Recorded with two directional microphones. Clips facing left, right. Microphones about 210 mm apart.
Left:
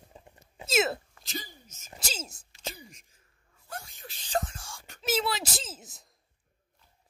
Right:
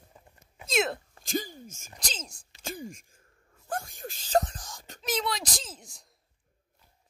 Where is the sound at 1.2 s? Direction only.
50° right (ahead or behind).